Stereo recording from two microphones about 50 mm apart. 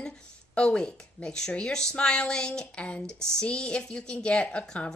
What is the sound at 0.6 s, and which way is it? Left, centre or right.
Speech, centre.